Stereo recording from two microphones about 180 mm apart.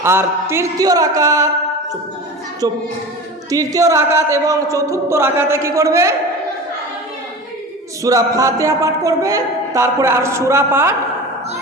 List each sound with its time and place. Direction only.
0.0 s music: 15° right (ahead or behind)
3.5 s music: 20° right (ahead or behind)
8.0 s music: 20° right (ahead or behind)